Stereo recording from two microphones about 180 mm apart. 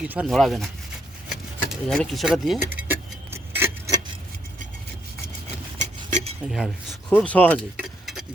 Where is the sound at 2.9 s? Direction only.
10° right (ahead or behind).